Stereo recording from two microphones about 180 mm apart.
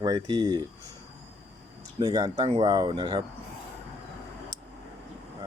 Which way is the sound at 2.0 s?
25° right (ahead or behind).